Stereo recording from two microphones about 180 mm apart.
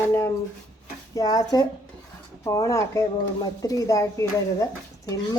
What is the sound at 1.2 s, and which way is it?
Speech, 20° left (ahead or behind).